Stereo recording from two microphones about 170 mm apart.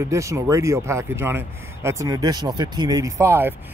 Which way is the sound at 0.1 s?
20° right (ahead or behind).